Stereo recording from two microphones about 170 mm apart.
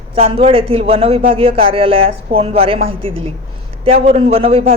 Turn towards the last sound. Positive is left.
turn(degrees=-35)  # may be behind; listen again after turning